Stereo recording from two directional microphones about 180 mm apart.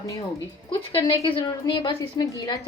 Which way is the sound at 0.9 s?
30° left (ahead or behind).